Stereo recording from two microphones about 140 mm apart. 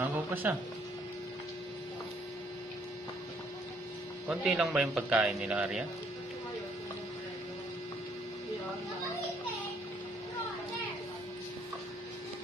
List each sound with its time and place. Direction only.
0.0 s speech: 15° right (ahead or behind)
4.3 s a man's voice: 5° right (ahead or behind)